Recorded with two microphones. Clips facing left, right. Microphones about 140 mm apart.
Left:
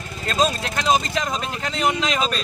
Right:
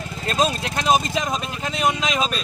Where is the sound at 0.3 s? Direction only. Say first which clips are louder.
Even; 15° right (ahead or behind).